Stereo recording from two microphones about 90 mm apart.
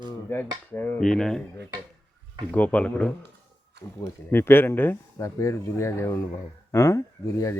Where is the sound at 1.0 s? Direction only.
5° left (ahead or behind).